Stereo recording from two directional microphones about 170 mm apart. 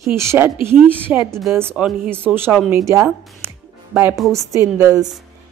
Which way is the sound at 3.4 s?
10° right (ahead or behind).